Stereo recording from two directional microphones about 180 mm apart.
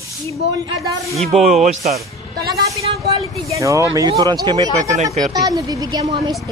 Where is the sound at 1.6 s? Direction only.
40° right (ahead or behind).